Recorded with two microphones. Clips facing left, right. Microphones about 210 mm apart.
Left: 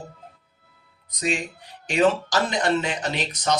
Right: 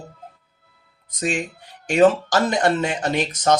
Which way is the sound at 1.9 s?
50° right (ahead or behind).